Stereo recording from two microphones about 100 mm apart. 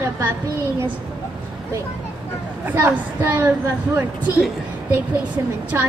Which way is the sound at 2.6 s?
20° right (ahead or behind).